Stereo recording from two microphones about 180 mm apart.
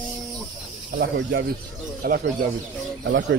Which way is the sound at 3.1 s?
80° right.